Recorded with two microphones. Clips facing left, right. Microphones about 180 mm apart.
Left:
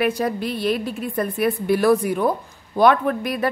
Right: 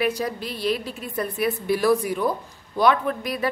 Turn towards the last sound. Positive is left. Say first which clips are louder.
# left 3 dB
turn(degrees=50)  # may be behind; listen again after turning